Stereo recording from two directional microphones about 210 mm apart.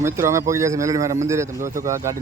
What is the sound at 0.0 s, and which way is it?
A man's voice, 15° right (ahead or behind).